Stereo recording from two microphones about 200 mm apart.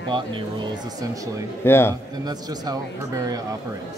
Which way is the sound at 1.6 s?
10° left (ahead or behind).